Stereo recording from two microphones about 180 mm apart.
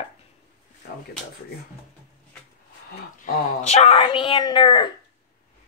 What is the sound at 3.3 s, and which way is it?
Speech, 40° left (ahead or behind).